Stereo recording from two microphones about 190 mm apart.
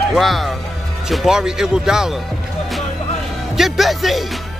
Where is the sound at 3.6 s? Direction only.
Centre (ahead or behind).